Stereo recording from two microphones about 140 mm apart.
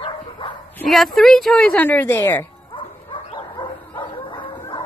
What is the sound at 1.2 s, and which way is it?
A woman's voice, centre (ahead or behind).